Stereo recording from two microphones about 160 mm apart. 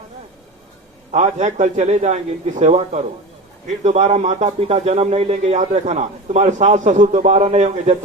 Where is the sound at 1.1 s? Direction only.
45° right (ahead or behind).